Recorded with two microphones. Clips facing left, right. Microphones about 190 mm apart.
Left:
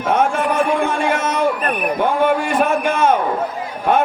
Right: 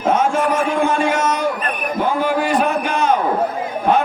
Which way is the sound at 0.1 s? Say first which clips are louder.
Even; 60° left (ahead or behind).